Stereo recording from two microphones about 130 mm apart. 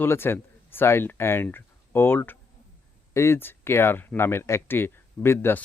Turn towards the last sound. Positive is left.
turn(degrees=15)  # may be behind; listen again after turning